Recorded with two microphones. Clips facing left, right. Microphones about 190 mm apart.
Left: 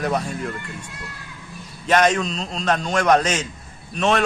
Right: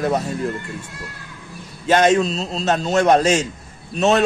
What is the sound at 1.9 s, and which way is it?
A man's voice, 30° right (ahead or behind).